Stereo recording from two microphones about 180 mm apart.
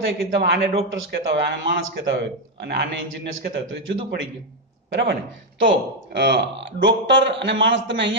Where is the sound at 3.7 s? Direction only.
90° right.